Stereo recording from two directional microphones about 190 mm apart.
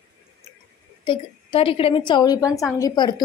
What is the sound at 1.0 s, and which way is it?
A woman's voice, 25° left (ahead or behind).